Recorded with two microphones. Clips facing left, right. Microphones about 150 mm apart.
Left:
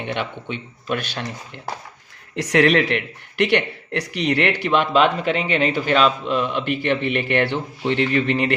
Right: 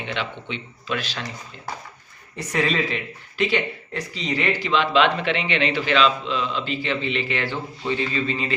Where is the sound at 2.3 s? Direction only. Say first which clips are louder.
Left 7 dB; 90° left; by 4.8 s 65° left (ahead or behind).